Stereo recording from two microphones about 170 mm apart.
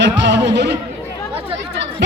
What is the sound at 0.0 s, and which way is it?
Music, 90° right.